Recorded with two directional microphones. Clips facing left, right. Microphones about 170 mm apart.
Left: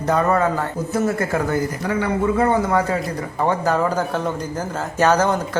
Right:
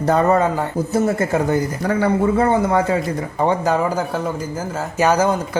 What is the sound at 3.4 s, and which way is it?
A man's voice, 15° right (ahead or behind).